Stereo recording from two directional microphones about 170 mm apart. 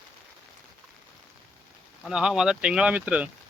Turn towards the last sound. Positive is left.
turn(degrees=-5)  # may be behind; listen again after turning